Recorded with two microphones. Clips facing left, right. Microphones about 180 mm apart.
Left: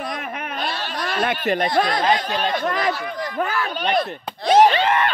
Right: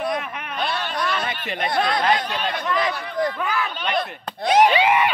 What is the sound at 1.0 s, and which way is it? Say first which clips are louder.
Speech: left 4 dB; 55° left (ahead or behind).